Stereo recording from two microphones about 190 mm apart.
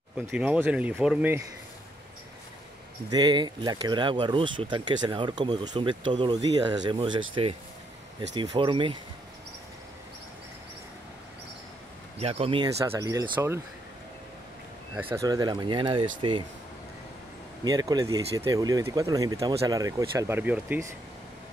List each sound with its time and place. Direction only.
0.3 s speech: 5° right (ahead or behind)
3.1 s speech: 20° right (ahead or behind)
12.2 s speech: 30° right (ahead or behind)
13.0 s speech: 15° right (ahead or behind)
15.0 s speech: 15° right (ahead or behind)
17.6 s speech: 20° right (ahead or behind)